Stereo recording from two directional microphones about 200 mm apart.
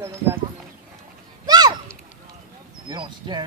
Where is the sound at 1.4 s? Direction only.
20° right (ahead or behind).